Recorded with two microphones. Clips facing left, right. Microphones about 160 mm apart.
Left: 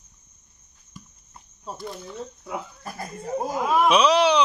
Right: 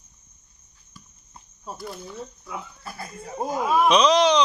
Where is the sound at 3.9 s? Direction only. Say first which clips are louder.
Right 1 dB; 10° left (ahead or behind).